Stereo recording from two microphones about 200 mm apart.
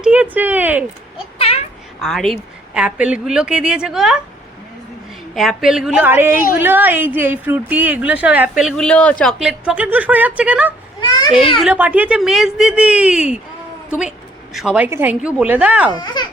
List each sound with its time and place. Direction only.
0.0 s speech: 5° right (ahead or behind)
2.0 s speech: centre (ahead or behind)
5.3 s a woman's voice: centre (ahead or behind)
11.0 s a sound: 20° left (ahead or behind)
11.6 s speech: 5° right (ahead or behind)
14.5 s a woman's voice: 5° right (ahead or behind)
15.9 s a child's voice: 20° left (ahead or behind)